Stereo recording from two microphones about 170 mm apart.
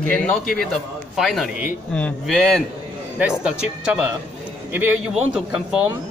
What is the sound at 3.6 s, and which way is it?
A man's voice, 5° right (ahead or behind).